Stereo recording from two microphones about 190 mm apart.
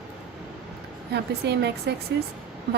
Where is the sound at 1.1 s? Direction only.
60° right (ahead or behind).